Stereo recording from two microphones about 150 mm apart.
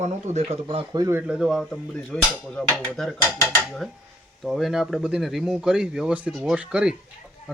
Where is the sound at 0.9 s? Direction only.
25° right (ahead or behind).